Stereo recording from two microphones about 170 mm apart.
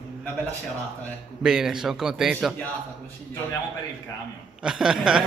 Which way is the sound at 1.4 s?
5° right (ahead or behind).